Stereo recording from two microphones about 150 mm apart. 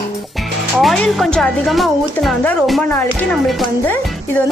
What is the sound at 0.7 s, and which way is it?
A woman's voice, 5° left (ahead or behind).